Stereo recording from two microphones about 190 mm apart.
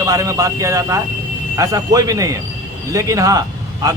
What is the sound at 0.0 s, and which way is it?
A man's voice, 15° right (ahead or behind).